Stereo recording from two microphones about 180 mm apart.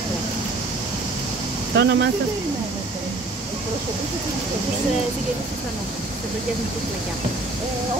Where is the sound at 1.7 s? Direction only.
75° right (ahead or behind).